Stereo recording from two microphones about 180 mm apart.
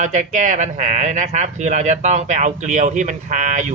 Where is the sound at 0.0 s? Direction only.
45° right (ahead or behind).